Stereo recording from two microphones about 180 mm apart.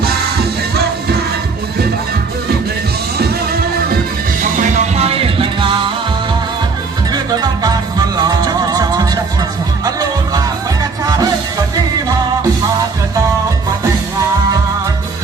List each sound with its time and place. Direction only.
5.0 s music: 30° right (ahead or behind)
7.1 s music: 20° right (ahead or behind)